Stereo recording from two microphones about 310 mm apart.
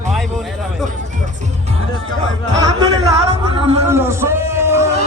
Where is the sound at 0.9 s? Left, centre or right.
Right.